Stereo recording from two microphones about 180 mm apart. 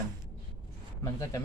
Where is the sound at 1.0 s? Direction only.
15° left (ahead or behind).